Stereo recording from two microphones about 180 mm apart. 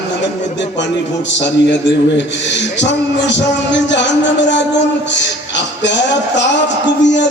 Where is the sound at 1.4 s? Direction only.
80° left.